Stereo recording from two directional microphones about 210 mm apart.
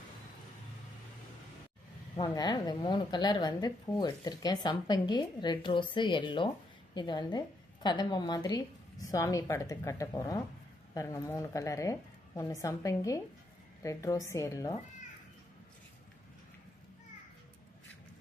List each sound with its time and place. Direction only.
2.1 s a woman's voice: 20° left (ahead or behind)